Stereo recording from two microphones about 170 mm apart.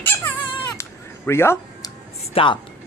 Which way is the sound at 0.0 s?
10° left (ahead or behind).